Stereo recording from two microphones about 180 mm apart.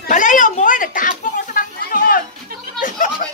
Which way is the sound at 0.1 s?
45° left (ahead or behind).